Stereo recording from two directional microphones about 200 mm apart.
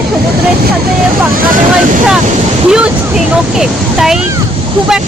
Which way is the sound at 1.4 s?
40° right (ahead or behind).